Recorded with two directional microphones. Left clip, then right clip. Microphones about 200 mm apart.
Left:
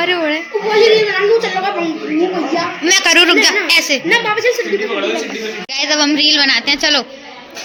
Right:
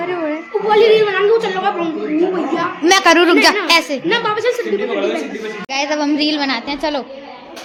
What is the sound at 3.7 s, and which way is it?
Speech, 15° right (ahead or behind).